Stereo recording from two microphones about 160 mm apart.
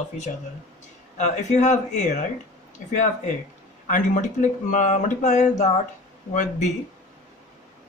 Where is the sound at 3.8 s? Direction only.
50° left (ahead or behind).